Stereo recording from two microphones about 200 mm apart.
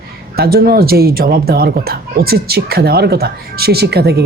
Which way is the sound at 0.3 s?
50° right (ahead or behind).